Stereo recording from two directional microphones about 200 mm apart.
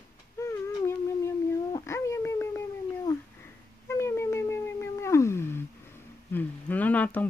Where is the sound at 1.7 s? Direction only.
15° left (ahead or behind).